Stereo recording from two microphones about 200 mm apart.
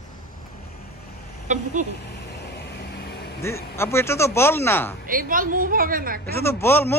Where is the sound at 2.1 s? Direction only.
55° left (ahead or behind).